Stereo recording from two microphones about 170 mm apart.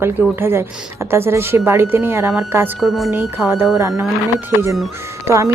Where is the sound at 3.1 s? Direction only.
15° right (ahead or behind).